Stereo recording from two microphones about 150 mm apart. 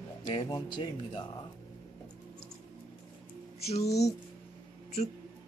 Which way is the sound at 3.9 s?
20° left (ahead or behind).